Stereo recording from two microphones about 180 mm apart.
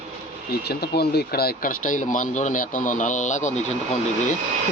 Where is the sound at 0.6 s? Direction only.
60° left (ahead or behind); by 3.5 s 40° left (ahead or behind).